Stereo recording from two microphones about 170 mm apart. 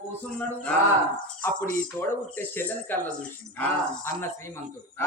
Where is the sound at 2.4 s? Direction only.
15° left (ahead or behind).